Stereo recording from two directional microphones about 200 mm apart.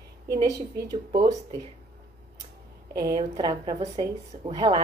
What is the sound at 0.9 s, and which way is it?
Speech, 20° right (ahead or behind).